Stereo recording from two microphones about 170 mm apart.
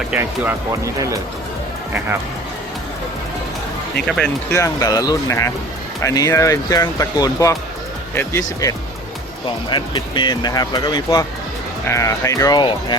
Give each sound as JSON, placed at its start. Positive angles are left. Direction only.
{"t": 0.1, "sound": "speech", "side_deg": -10}
{"t": 4.0, "sound": "speech", "side_deg": 0}
{"t": 4.5, "sound": "speech", "side_deg": 20}
{"t": 9.6, "sound": "speech", "side_deg": 25}